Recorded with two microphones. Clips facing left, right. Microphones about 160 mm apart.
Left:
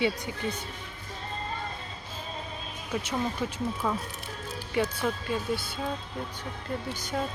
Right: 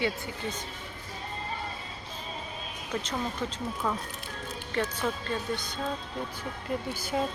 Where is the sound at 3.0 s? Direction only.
10° left (ahead or behind).